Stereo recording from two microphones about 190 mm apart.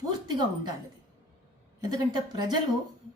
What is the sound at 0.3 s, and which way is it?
Speech, 20° right (ahead or behind).